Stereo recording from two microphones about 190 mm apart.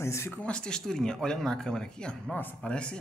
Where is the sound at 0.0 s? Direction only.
15° left (ahead or behind).